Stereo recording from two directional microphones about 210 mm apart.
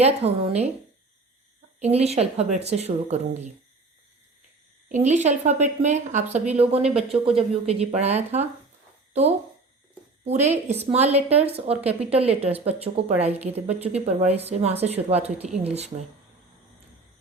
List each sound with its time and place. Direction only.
0.0 s a woman's voice: 30° right (ahead or behind)
1.8 s speech: 30° right (ahead or behind)
4.9 s speech: 35° right (ahead or behind)
10.2 s a woman's voice: 30° right (ahead or behind)